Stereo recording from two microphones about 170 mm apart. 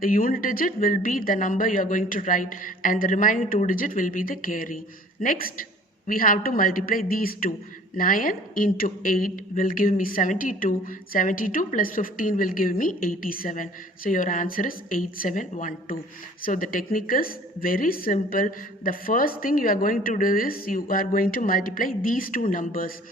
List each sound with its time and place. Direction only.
0.0 s a woman's voice: 55° left (ahead or behind)